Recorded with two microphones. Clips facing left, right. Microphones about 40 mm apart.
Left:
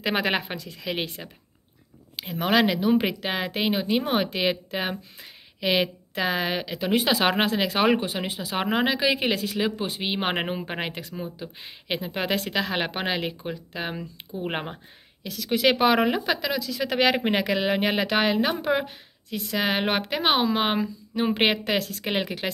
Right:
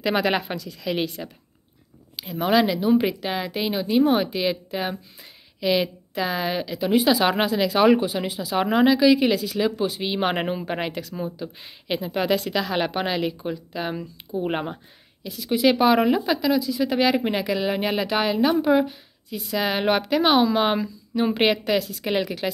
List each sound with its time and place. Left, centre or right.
0.0 s speech: left
0.6 s a woman's voice: left
1.2 s speech: centre
2.1 s a woman's voice: left
10.9 s a woman's voice: left
11.4 s speech: left
15.2 s speech: left
15.6 s a woman's voice: left
16.6 s speech: left
16.9 s a woman's voice: left
19.2 s a woman's voice: left
19.5 s a woman's voice: left
21.7 s a woman's voice: left
22.0 s a woman's voice: left